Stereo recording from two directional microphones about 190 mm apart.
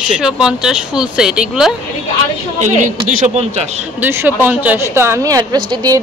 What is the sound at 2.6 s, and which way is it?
Speech, 40° right (ahead or behind).